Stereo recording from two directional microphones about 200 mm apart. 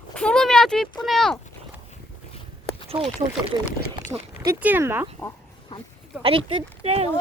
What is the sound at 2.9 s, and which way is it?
Speech, 30° right (ahead or behind).